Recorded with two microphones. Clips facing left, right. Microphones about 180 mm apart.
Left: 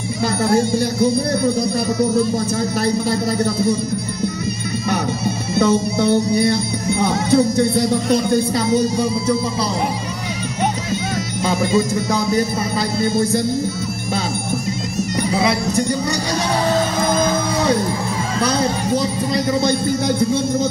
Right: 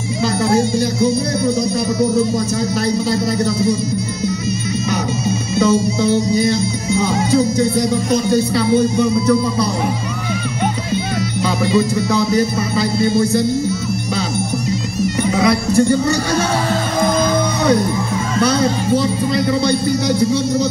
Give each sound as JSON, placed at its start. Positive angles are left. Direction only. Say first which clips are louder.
{"t": 0.2, "sound": "speech", "louder": "right 1 dB", "side_deg": 55}
{"t": 4.8, "sound": "music", "louder": "left 1 dB", "side_deg": 60}
{"t": 8.4, "sound": "music", "louder": "right 3 dB", "side_deg": 40}
{"t": 11.4, "sound": "speech", "louder": "right 1 dB", "side_deg": 45}
{"t": 15.7, "sound": "speech", "louder": "right 6 dB", "side_deg": 15}
{"t": 18.4, "sound": "speech", "louder": "right 3 dB", "side_deg": 35}